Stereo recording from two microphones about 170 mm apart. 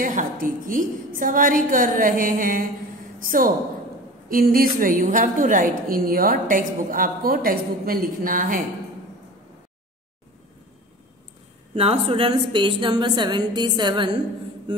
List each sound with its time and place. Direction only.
0.0 s a woman's voice: 50° right (ahead or behind)
11.7 s a woman's voice: 35° right (ahead or behind)